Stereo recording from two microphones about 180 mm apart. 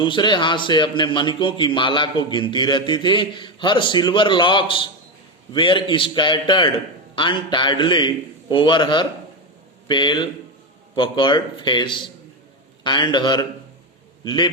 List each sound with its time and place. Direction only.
0.0 s a man's voice: 25° left (ahead or behind)